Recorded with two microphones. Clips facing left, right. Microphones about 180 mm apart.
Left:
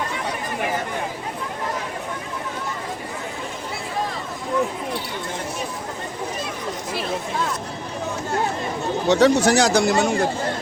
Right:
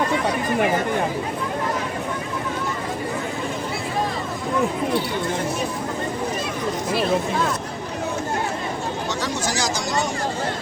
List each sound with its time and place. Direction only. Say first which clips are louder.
9.0 s speech: left 14 dB; 65° left (ahead or behind)